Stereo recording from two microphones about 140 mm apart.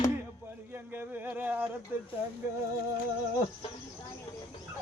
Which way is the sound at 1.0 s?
10° right (ahead or behind).